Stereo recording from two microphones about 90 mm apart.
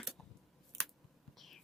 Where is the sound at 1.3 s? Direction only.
Centre (ahead or behind).